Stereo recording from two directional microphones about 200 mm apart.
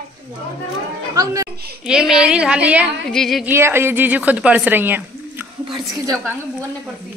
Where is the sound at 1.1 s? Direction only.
15° right (ahead or behind).